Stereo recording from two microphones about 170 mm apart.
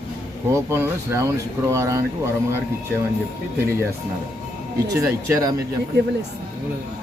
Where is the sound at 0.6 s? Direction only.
15° right (ahead or behind).